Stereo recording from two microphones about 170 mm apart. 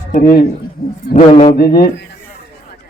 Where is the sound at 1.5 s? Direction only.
70° left (ahead or behind).